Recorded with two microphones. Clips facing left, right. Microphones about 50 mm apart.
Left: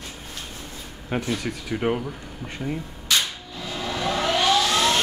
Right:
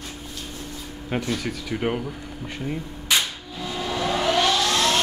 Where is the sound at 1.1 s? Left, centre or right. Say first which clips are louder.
Even; centre.